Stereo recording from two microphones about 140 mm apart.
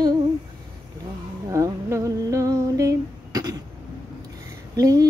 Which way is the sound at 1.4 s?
25° right (ahead or behind).